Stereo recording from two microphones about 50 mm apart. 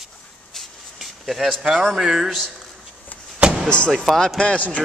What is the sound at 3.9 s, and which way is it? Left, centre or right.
Speech, centre.